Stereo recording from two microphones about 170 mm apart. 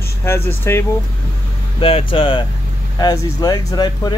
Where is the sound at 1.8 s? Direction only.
30° left (ahead or behind).